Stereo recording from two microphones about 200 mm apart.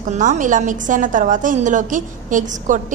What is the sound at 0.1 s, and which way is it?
A woman's voice, 40° right (ahead or behind).